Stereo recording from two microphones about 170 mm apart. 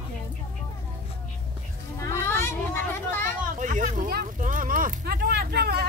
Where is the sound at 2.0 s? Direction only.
15° left (ahead or behind).